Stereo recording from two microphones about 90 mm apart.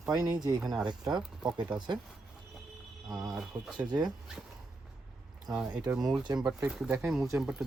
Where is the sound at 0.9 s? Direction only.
55° right (ahead or behind).